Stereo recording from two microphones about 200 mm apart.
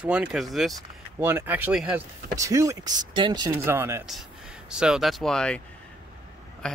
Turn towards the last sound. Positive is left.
turn(degrees=5)  # may be behind; listen again after turning